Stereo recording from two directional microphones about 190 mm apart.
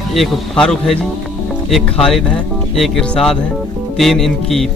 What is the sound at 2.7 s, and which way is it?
Speech, centre (ahead or behind).